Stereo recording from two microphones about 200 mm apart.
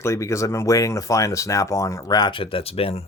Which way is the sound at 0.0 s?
15° left (ahead or behind).